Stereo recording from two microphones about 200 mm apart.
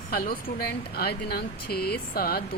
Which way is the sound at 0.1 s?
50° left (ahead or behind).